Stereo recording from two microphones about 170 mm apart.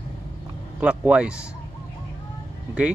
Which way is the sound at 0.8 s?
5° right (ahead or behind).